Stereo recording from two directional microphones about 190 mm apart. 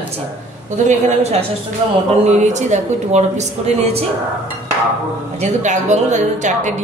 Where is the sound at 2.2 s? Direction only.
40° right (ahead or behind).